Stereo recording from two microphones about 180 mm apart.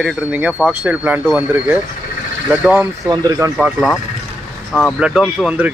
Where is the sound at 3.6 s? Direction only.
Centre (ahead or behind).